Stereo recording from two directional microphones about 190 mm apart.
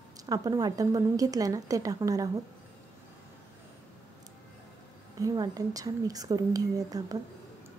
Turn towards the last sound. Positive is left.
turn(degrees=-20)  # may be behind; listen again after turning